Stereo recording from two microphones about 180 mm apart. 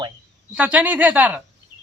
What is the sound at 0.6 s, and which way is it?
Speech, 5° right (ahead or behind).